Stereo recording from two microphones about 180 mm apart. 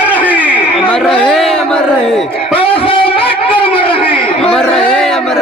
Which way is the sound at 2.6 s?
30° left (ahead or behind).